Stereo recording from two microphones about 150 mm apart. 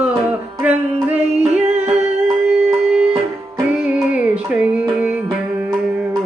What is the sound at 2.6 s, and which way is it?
Music, 5° right (ahead or behind).